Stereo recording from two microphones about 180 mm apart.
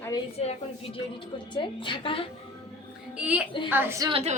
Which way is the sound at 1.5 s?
25° left (ahead or behind).